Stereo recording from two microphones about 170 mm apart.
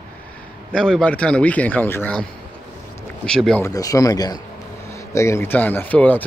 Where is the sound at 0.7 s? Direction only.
5° left (ahead or behind).